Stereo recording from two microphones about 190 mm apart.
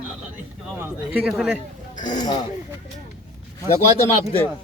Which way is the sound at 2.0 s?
40° left (ahead or behind).